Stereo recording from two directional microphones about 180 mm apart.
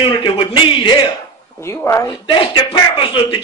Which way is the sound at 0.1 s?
30° left (ahead or behind).